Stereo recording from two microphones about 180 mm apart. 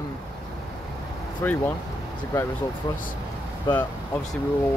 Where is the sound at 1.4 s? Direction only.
15° left (ahead or behind).